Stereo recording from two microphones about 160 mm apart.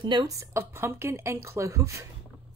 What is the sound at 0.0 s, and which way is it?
Speech, 25° right (ahead or behind).